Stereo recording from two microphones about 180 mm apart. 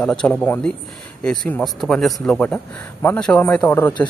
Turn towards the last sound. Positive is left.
turn(degrees=10)  # may be behind; listen again after turning